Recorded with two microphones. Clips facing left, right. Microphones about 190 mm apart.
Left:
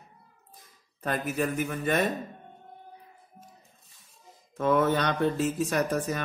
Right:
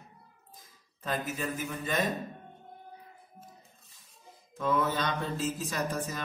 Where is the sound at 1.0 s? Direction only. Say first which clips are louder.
Left 5 dB; 65° left (ahead or behind).